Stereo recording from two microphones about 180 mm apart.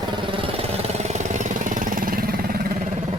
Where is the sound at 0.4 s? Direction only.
35° right (ahead or behind); by 2.3 s 50° right (ahead or behind).